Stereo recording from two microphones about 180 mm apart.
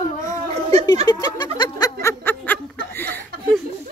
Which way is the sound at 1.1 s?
25° left (ahead or behind).